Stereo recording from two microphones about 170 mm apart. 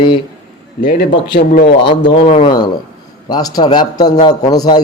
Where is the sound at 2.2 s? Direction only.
30° left (ahead or behind).